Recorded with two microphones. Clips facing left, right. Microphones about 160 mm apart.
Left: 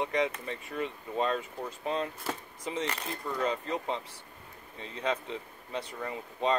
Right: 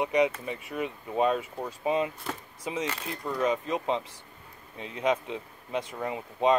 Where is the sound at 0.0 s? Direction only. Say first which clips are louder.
Right 5 dB; 15° right (ahead or behind).